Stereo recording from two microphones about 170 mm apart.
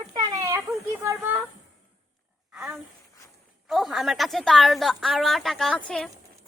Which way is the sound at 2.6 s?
10° right (ahead or behind).